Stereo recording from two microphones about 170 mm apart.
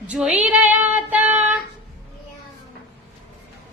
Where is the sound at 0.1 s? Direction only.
5° right (ahead or behind).